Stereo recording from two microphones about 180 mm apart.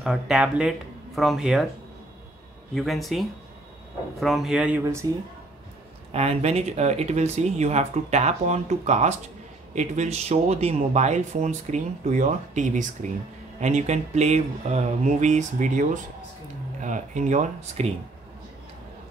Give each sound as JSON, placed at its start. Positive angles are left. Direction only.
{"t": 0.0, "sound": "speech", "side_deg": -5}
{"t": 2.7, "sound": "speech", "side_deg": 0}
{"t": 6.1, "sound": "speech", "side_deg": -35}